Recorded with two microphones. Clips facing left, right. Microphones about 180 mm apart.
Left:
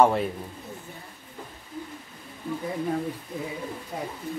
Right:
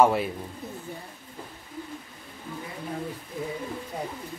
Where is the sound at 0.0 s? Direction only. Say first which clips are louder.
Even; 5° right (ahead or behind).